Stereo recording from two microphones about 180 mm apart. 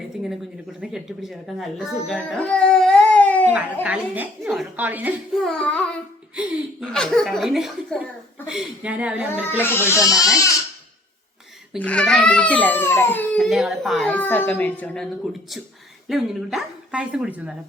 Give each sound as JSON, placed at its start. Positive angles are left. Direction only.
{"t": 0.8, "sound": "speech", "side_deg": 0}
{"t": 3.8, "sound": "a child's voice", "side_deg": -10}
{"t": 9.6, "sound": "a child's voice", "side_deg": 10}
{"t": 11.8, "sound": "a child's voice", "side_deg": 5}